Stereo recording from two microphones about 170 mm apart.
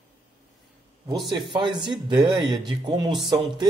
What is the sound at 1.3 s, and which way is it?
Speech, 25° right (ahead or behind).